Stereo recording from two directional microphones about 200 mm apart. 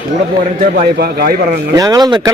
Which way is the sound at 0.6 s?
45° right (ahead or behind).